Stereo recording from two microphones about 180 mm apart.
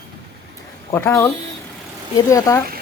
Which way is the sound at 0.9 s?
15° left (ahead or behind).